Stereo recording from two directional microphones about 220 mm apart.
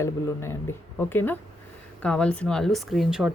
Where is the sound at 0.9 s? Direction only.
10° left (ahead or behind).